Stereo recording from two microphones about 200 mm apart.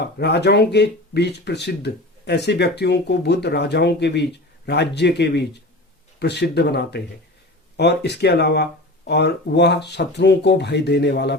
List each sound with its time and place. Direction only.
0.0 s speech: 55° left (ahead or behind)